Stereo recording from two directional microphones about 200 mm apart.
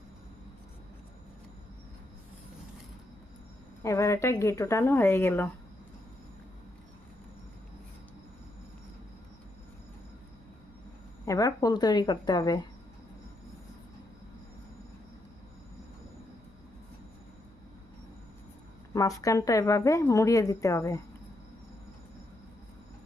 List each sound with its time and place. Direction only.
3.8 s a woman's voice: 15° left (ahead or behind)
11.3 s a woman's voice: 15° left (ahead or behind)
18.9 s a woman's voice: 15° left (ahead or behind)